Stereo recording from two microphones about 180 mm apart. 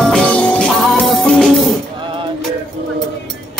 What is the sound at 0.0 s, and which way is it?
Music, 5° left (ahead or behind).